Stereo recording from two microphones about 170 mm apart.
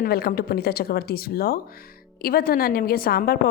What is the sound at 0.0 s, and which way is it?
A woman's voice, 65° left (ahead or behind).